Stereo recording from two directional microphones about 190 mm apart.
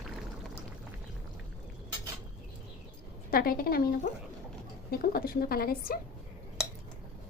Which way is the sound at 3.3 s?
50° left (ahead or behind).